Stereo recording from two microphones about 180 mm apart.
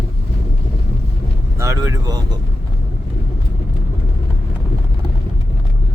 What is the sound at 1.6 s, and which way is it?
Speech, 15° right (ahead or behind).